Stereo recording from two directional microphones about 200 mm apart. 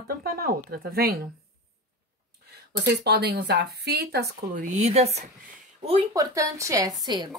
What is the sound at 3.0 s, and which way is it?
Speech, 55° right (ahead or behind).